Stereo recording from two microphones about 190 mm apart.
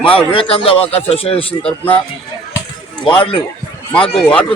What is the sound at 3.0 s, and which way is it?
A man's voice, 25° left (ahead or behind).